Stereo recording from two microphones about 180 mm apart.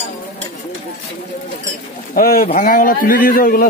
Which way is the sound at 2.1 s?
55° left (ahead or behind).